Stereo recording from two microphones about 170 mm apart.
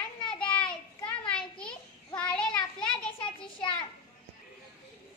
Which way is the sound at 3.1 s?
30° left (ahead or behind).